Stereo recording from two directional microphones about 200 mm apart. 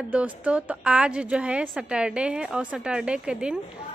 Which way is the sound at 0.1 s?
5° right (ahead or behind).